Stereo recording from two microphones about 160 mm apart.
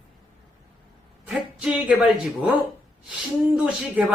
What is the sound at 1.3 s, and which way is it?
Speech, 5° right (ahead or behind).